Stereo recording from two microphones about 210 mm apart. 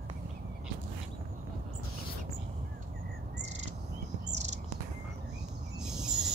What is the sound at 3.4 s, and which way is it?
Bird, 30° right (ahead or behind).